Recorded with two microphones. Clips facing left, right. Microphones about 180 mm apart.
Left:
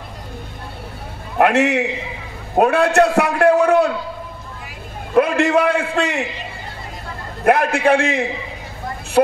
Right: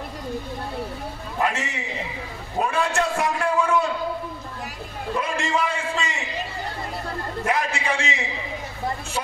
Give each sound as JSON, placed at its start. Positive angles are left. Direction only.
{"t": 1.4, "sound": "a man's voice", "side_deg": 65}
{"t": 5.1, "sound": "a man's voice", "side_deg": 60}
{"t": 7.4, "sound": "a man's voice", "side_deg": 60}